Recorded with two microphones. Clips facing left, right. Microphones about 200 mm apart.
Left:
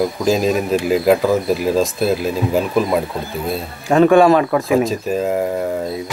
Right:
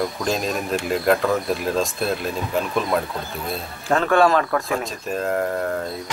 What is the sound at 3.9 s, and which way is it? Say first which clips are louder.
Speech: left 7 dB; 15° left (ahead or behind).